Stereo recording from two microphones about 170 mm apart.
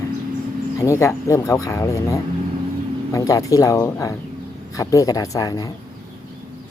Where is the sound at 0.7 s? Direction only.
15° left (ahead or behind).